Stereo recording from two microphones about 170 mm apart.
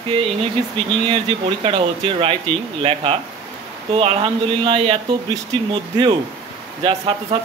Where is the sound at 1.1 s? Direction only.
30° right (ahead or behind).